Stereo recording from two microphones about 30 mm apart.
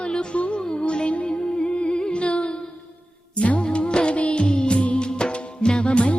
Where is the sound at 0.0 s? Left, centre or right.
Left.